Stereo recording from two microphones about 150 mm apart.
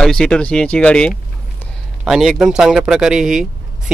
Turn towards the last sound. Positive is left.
turn(degrees=-5)  # may be behind; listen again after turning